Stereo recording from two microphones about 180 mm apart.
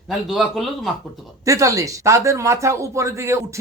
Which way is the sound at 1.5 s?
20° right (ahead or behind).